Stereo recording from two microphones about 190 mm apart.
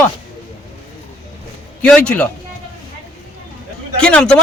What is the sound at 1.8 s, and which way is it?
Speech, 5° left (ahead or behind).